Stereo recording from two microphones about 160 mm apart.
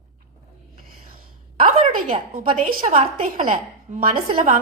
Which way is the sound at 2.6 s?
40° right (ahead or behind).